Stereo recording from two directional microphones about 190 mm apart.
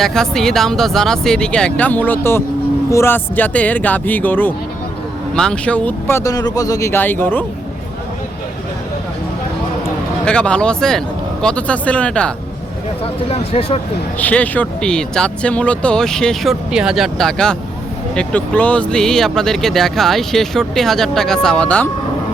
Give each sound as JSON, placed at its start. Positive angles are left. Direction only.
{"t": 0.0, "sound": "speech", "side_deg": 5}
{"t": 9.8, "sound": "speech", "side_deg": 5}
{"t": 13.3, "sound": "speech", "side_deg": 30}
{"t": 14.2, "sound": "speech", "side_deg": 10}